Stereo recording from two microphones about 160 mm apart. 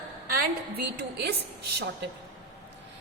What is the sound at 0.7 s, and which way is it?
Speech, 90° right.